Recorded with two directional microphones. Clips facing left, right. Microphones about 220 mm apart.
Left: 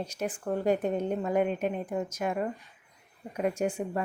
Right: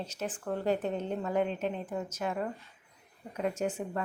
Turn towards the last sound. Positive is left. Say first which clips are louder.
# left 3 dB
turn(degrees=10)  # may be behind; listen again after turning